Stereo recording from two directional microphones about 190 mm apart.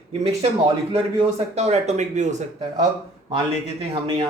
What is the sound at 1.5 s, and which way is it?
Speech, 35° right (ahead or behind).